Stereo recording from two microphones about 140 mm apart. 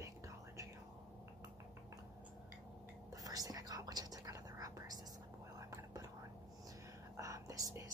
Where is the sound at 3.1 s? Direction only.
25° right (ahead or behind).